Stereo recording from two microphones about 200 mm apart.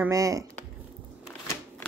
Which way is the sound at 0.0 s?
15° right (ahead or behind).